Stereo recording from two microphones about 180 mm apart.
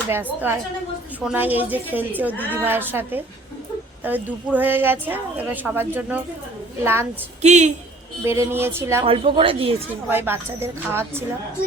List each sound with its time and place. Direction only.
1.2 s a woman's voice: 10° right (ahead or behind)
7.4 s speech: 40° right (ahead or behind)
8.2 s a woman's voice: 15° right (ahead or behind)
9.0 s speech: 30° right (ahead or behind)
10.1 s a woman's voice: 10° right (ahead or behind)